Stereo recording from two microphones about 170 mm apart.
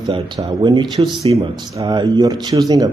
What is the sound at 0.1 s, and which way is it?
A man's voice, 30° right (ahead or behind).